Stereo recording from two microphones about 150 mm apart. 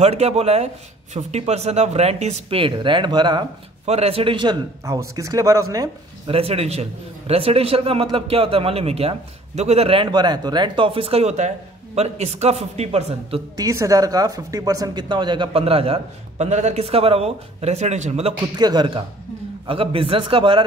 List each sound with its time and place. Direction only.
0.0 s speech: 45° right (ahead or behind); by 3.4 s 30° right (ahead or behind)
3.8 s speech: 45° right (ahead or behind)
4.8 s speech: 20° right (ahead or behind)
6.2 s speech: 40° right (ahead or behind)
13.6 s speech: 20° right (ahead or behind); by 18.3 s 45° right (ahead or behind)
18.6 s speech: 30° right (ahead or behind)